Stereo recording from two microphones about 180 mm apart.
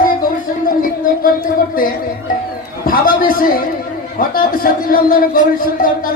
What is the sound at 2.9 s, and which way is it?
A man's voice, 50° left (ahead or behind).